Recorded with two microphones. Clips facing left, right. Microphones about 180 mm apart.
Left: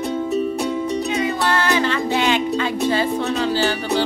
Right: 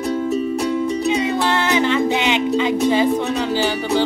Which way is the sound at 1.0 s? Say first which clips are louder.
Right 3 dB; 20° right (ahead or behind).